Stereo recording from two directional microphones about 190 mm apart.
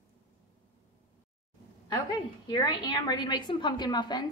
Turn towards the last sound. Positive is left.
turn(degrees=20)  # may be behind; listen again after turning